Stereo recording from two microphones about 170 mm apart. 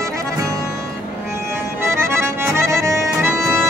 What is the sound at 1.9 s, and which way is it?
Accordion, 15° right (ahead or behind).